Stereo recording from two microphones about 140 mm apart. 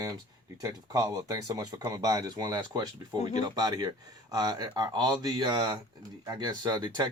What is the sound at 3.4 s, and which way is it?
Speech, 30° right (ahead or behind).